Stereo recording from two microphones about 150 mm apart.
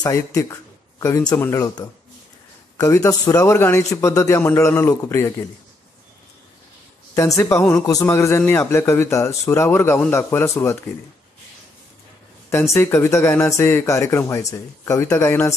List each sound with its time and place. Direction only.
0.0 s speech: 20° left (ahead or behind)
2.8 s speech: 20° left (ahead or behind)
7.2 s speech: 20° left (ahead or behind)
12.4 s speech: 15° left (ahead or behind)